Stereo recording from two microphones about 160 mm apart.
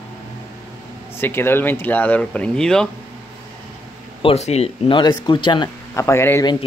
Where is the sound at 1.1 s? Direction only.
15° left (ahead or behind).